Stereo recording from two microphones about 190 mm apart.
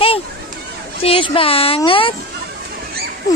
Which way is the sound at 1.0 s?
30° left (ahead or behind).